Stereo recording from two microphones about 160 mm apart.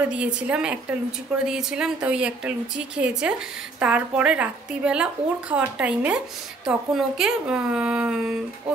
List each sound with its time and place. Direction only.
0.0 s a woman's voice: 10° right (ahead or behind)